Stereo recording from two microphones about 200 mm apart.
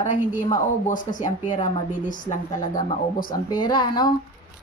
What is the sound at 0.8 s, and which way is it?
Speech, 40° left (ahead or behind).